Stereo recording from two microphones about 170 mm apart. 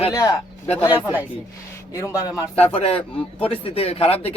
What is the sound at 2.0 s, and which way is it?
Speech, 20° left (ahead or behind).